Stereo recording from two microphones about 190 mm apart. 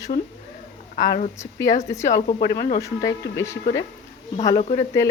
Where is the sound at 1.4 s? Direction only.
15° left (ahead or behind).